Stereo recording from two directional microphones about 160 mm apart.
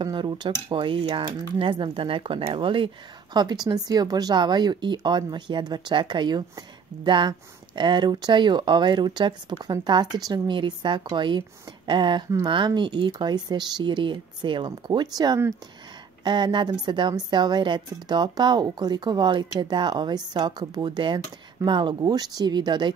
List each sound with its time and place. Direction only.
0.0 s speech: 30° right (ahead or behind)